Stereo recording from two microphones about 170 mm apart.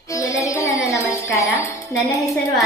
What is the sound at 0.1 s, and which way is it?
Music, 20° left (ahead or behind).